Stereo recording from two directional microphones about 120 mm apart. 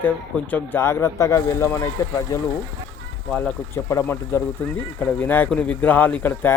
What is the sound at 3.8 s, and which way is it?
A man's voice, 25° left (ahead or behind).